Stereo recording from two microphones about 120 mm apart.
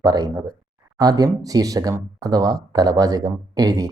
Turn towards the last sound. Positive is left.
turn(degrees=-30)  # may be behind; listen again after turning